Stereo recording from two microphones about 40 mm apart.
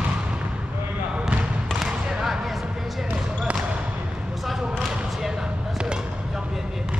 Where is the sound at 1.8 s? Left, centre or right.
Centre.